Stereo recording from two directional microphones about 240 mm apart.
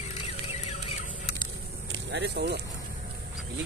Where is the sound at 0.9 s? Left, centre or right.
Left.